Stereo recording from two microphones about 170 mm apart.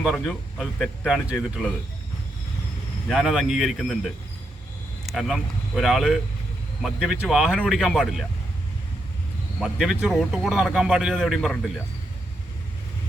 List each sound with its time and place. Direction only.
0.0 s speech: centre (ahead or behind)
3.1 s speech: centre (ahead or behind)
5.0 s speech: centre (ahead or behind)
9.6 s speech: centre (ahead or behind)